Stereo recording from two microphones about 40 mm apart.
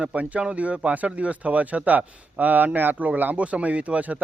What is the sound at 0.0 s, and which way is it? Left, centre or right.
Speech, right.